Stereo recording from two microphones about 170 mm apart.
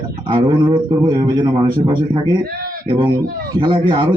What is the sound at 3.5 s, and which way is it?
Speech, 25° right (ahead or behind).